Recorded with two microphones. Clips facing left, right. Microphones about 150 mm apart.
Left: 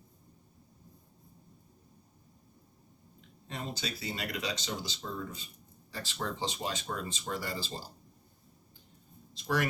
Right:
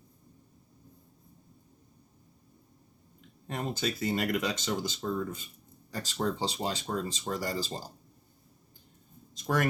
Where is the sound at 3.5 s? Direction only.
50° right (ahead or behind).